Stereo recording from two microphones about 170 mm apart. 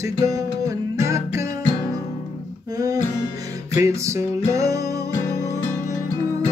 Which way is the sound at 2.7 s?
20° right (ahead or behind).